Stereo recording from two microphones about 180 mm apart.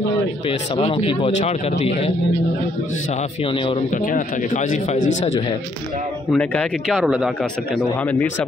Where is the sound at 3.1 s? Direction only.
35° left (ahead or behind).